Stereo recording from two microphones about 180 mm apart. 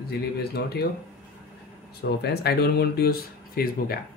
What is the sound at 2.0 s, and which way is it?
Speech, 65° left (ahead or behind).